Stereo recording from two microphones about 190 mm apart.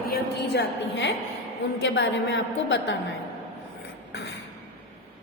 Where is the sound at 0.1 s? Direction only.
65° left (ahead or behind).